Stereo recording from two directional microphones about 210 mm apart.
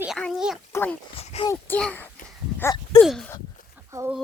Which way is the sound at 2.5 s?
15° left (ahead or behind).